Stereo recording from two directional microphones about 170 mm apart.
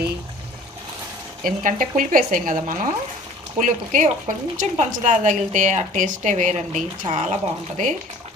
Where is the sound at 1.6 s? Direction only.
50° right (ahead or behind).